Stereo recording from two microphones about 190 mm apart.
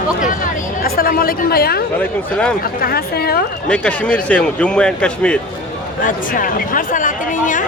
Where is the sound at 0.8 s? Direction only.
50° left (ahead or behind).